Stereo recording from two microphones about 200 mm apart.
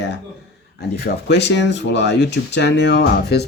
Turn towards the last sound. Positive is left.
turn(degrees=60)  # may be behind; listen again after turning